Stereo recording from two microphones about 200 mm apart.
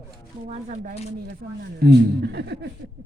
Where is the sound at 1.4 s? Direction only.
50° right (ahead or behind).